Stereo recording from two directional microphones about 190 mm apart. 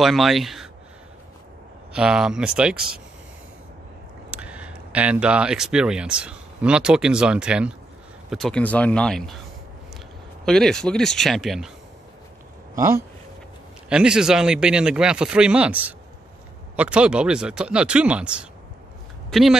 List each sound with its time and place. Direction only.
0.0 s speech: centre (ahead or behind)
2.0 s speech: 5° right (ahead or behind)
4.3 s speech: 5° right (ahead or behind)
10.4 s speech: 5° left (ahead or behind)
12.7 s speech: 15° right (ahead or behind)
13.8 s speech: 5° right (ahead or behind)